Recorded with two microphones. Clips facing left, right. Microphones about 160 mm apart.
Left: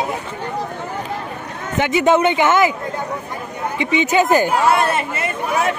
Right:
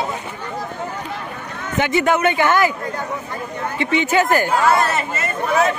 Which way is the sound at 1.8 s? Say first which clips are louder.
Left 3 dB; 20° left (ahead or behind).